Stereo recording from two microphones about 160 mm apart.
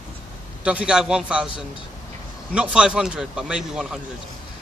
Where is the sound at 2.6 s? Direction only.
5° right (ahead or behind).